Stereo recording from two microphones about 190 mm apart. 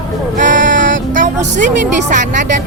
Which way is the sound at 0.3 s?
40° right (ahead or behind).